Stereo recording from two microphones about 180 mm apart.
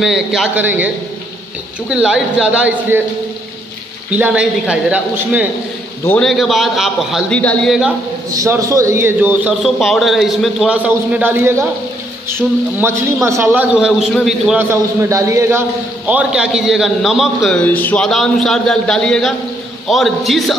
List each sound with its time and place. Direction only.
0.0 s a man's voice: centre (ahead or behind)
4.1 s a man's voice: 5° right (ahead or behind)
6.0 s a man's voice: 5° left (ahead or behind)
8.3 s a man's voice: 20° right (ahead or behind); by 14.6 s centre (ahead or behind)
14.6 s a man's voice: 15° right (ahead or behind)
16.1 s a man's voice: 5° right (ahead or behind)